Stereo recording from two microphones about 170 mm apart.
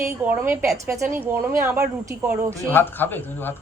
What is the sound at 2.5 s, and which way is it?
Speech, 10° left (ahead or behind).